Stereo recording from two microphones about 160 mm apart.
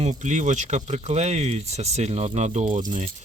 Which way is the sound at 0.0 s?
45° right (ahead or behind).